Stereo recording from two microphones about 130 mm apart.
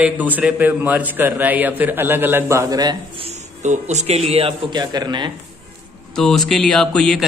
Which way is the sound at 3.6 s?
65° right (ahead or behind).